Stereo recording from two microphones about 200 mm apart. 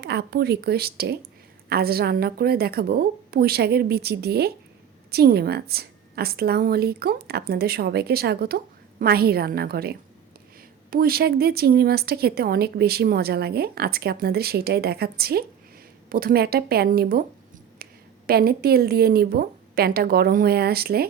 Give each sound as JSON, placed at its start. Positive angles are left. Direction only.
{"t": 0.0, "sound": "a woman's voice", "side_deg": -55}
{"t": 17.8, "sound": "a sound", "side_deg": -50}
{"t": 18.3, "sound": "a woman's voice", "side_deg": -50}